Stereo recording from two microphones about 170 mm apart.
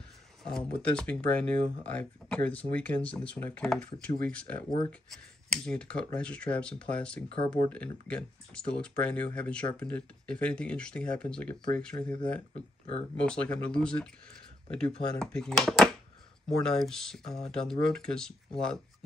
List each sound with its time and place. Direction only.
0.4 s speech: 5° left (ahead or behind)
7.3 s speech: 25° left (ahead or behind)
7.7 s speech: 5° left (ahead or behind)
13.2 s speech: 5° left (ahead or behind)